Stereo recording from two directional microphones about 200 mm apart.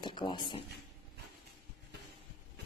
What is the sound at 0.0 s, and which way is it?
Speech, 25° left (ahead or behind).